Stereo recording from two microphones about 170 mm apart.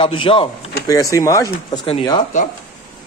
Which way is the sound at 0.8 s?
20° left (ahead or behind).